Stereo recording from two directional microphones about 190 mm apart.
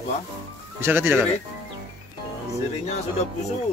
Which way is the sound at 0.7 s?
10° right (ahead or behind).